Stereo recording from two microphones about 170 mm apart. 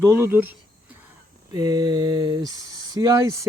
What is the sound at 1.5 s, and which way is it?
Speech, 25° right (ahead or behind).